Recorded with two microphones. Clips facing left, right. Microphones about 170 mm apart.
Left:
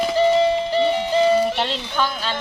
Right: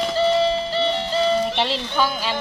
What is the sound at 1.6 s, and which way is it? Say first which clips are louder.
Music: right 1 dB; 5° right (ahead or behind).